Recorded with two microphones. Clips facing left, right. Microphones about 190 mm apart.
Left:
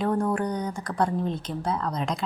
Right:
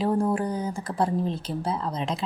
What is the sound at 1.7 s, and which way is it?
Speech, 30° right (ahead or behind).